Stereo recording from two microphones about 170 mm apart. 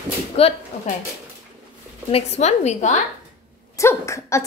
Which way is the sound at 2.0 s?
40° left (ahead or behind).